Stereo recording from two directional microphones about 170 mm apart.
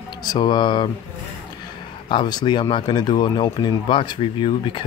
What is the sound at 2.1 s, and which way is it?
Speech, 25° left (ahead or behind).